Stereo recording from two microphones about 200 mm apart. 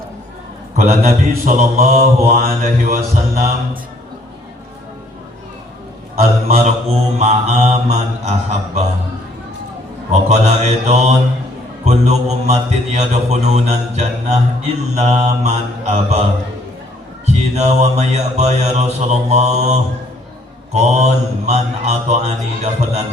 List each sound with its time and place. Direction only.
0.8 s mantra: 40° right (ahead or behind)
7.2 s mantra: 35° right (ahead or behind)
10.1 s mantra: 35° right (ahead or behind)
17.2 s mantra: 35° right (ahead or behind)